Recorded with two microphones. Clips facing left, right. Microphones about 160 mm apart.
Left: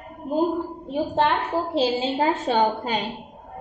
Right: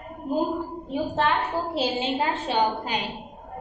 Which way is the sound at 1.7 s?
35° left (ahead or behind).